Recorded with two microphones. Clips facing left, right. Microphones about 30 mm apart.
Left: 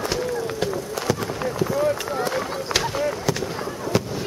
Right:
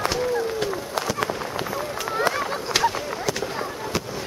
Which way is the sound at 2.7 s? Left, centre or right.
Centre.